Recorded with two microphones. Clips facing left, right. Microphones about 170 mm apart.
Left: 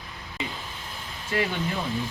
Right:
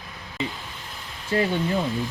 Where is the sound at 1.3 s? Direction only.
30° right (ahead or behind).